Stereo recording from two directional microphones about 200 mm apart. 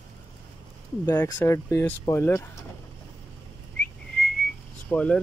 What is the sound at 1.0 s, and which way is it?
Speech, 15° left (ahead or behind).